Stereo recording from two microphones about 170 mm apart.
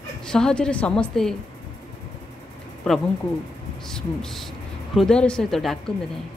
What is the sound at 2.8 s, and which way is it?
A woman's voice, 5° left (ahead or behind).